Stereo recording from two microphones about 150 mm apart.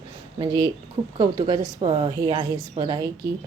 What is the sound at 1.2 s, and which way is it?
A woman's voice, 35° right (ahead or behind).